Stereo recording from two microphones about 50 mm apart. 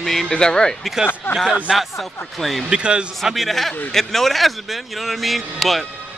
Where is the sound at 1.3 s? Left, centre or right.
Left.